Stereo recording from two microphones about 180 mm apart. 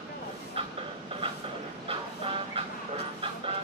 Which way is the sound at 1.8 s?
30° right (ahead or behind).